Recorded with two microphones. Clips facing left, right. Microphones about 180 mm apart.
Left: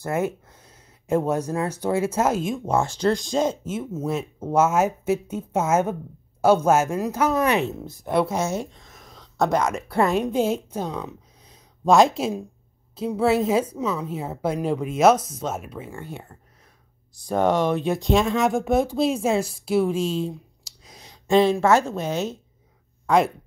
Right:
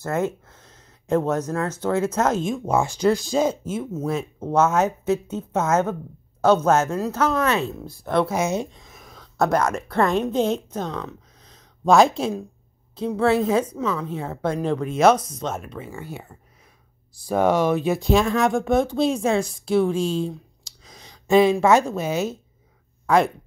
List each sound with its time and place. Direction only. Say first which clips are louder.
0.0 s speech: right 1 dB; 15° left (ahead or behind)
2.8 s a woman's voice: right 2 dB; 10° right (ahead or behind); by 8.2 s 20° left (ahead or behind)
8.3 s a woman's voice: right 2 dB; 15° right (ahead or behind); by 21.4 s centre (ahead or behind)
21.4 s speech: right 2 dB; 15° right (ahead or behind)